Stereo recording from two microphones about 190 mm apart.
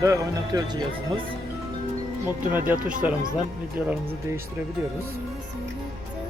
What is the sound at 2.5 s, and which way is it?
Speech, 10° right (ahead or behind).